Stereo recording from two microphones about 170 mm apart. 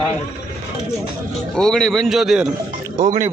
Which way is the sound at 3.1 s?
45° right (ahead or behind).